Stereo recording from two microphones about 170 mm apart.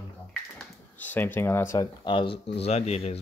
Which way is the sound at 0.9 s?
10° left (ahead or behind).